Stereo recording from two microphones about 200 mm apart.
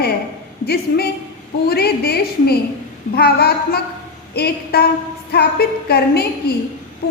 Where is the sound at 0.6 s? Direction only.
50° left (ahead or behind).